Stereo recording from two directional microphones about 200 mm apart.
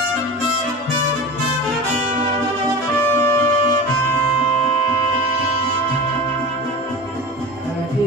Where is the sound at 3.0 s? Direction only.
10° left (ahead or behind).